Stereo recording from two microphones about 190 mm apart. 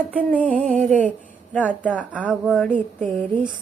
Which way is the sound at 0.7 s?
5° left (ahead or behind).